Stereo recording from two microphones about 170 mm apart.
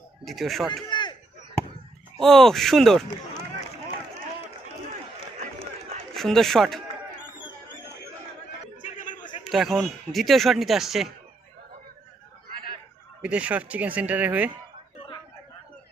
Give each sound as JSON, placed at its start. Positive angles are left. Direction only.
{"t": 0.3, "sound": "speech", "side_deg": 0}
{"t": 0.9, "sound": "a sound", "side_deg": 25}
{"t": 2.2, "sound": "speech", "side_deg": 0}
{"t": 6.1, "sound": "speech", "side_deg": 0}
{"t": 8.8, "sound": "a sound", "side_deg": 50}
{"t": 9.4, "sound": "speech", "side_deg": 0}
{"t": 13.2, "sound": "speech", "side_deg": -10}